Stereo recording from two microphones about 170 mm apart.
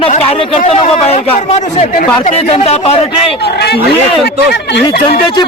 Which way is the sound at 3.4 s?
70° left (ahead or behind).